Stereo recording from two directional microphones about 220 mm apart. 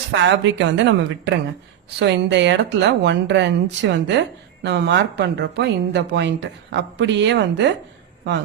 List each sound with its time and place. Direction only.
0.1 s a woman's voice: 55° right (ahead or behind)